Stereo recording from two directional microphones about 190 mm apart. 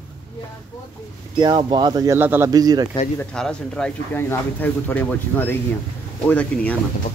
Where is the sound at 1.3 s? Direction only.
25° right (ahead or behind).